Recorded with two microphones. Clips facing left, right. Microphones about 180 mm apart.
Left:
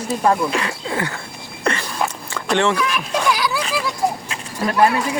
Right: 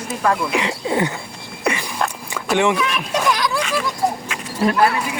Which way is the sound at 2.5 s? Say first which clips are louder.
Right 1 dB; 10° right (ahead or behind).